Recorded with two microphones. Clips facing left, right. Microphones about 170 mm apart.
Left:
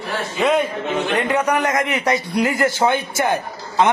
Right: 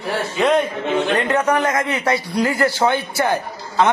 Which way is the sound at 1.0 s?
10° left (ahead or behind).